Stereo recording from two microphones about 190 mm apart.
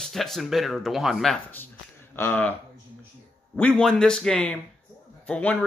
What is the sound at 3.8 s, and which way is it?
A man's voice, 5° left (ahead or behind).